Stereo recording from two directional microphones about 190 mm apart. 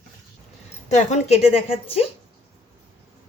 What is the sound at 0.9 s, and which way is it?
A woman's voice, 35° left (ahead or behind).